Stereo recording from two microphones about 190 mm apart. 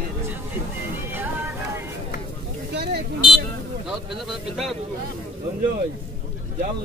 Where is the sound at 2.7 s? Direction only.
60° right (ahead or behind).